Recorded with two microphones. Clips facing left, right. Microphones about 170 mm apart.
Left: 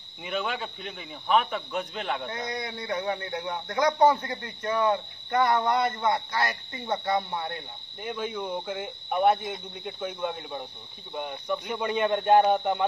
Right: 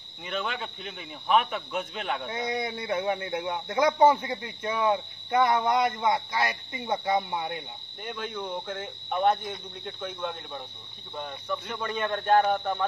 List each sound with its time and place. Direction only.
0.2 s speech: 5° left (ahead or behind)
2.2 s speech: 15° right (ahead or behind)
8.0 s speech: 5° left (ahead or behind)